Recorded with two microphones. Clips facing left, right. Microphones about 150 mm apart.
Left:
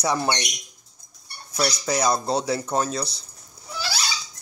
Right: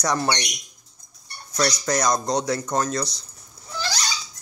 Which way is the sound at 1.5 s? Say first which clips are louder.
Right 1 dB; 5° left (ahead or behind).